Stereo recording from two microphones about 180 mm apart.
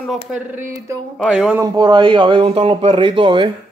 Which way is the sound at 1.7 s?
25° right (ahead or behind).